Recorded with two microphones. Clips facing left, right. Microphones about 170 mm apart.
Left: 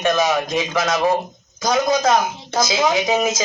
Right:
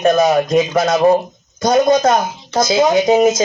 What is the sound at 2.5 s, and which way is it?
Speech, 30° right (ahead or behind).